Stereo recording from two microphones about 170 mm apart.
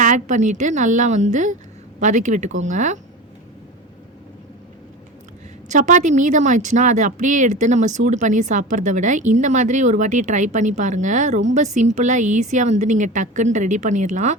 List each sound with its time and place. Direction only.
0.0 s a woman's voice: 45° right (ahead or behind)
5.6 s a woman's voice: 45° right (ahead or behind)